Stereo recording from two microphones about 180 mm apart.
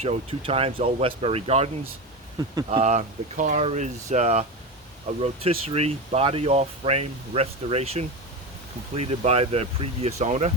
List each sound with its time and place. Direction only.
0.0 s speech: 35° right (ahead or behind)